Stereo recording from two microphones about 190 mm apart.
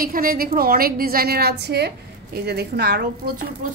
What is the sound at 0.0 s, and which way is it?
A woman's voice, 50° right (ahead or behind).